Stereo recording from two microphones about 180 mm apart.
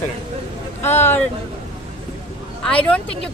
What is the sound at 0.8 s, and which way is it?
Speech, 10° left (ahead or behind).